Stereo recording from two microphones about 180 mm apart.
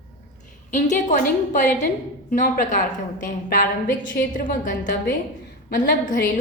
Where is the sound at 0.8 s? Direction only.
45° left (ahead or behind).